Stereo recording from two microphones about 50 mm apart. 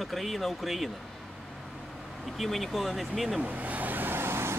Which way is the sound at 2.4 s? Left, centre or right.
Centre.